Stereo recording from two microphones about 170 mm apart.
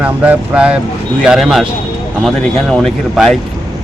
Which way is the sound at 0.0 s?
10° right (ahead or behind).